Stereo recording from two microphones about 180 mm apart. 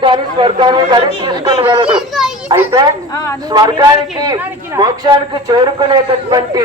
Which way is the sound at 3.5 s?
20° right (ahead or behind).